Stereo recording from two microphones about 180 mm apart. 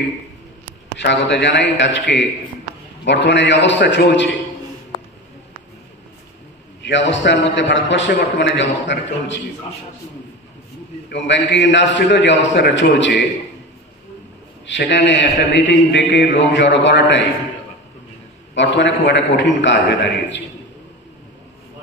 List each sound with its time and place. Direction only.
0.9 s a man's voice: 75° left (ahead or behind)
6.8 s a man's voice: 85° left
11.1 s a man's voice: 80° left
14.7 s a man's voice: 80° left
18.5 s a man's voice: 80° left